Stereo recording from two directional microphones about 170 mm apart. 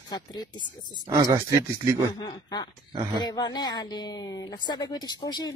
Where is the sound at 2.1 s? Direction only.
25° left (ahead or behind).